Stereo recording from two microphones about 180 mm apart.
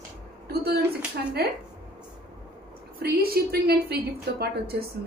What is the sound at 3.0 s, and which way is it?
A woman's voice, 60° right (ahead or behind).